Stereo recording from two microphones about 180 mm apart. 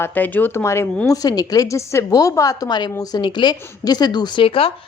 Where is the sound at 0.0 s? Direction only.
10° left (ahead or behind).